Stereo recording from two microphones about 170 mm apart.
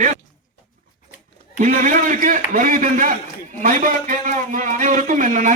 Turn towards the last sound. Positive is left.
turn(degrees=-50)  # may be behind; listen again after turning